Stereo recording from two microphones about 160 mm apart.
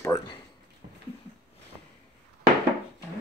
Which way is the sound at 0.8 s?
50° right (ahead or behind).